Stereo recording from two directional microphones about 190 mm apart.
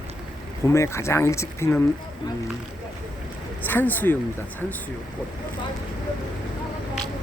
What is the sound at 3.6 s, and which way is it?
Speech, 10° left (ahead or behind).